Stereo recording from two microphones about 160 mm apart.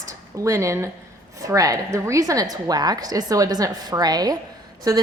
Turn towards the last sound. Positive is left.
turn(degrees=-20)  # may be behind; listen again after turning